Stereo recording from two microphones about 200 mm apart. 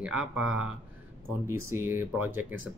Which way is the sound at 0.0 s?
5° right (ahead or behind).